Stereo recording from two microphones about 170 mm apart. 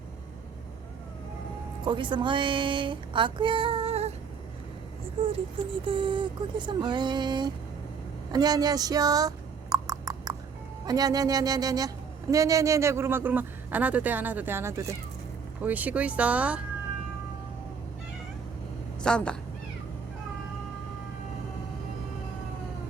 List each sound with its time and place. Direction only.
1.8 s a woman's voice: 30° right (ahead or behind)
5.8 s speech: 30° right (ahead or behind)
8.3 s a sound: 25° right (ahead or behind)
10.8 s speech: 20° right (ahead or behind); by 16.6 s 5° right (ahead or behind)
19.0 s speech: 5° left (ahead or behind)